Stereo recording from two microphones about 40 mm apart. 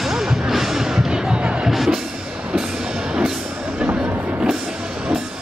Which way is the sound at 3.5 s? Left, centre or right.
Right.